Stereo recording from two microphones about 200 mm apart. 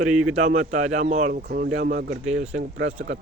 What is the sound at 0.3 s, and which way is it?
Speech, 35° right (ahead or behind).